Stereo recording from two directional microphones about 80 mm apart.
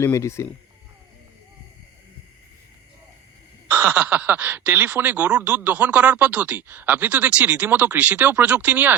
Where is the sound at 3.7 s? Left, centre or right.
Right.